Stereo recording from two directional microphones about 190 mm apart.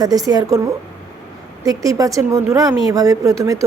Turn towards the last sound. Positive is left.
turn(degrees=-15)  # may be behind; listen again after turning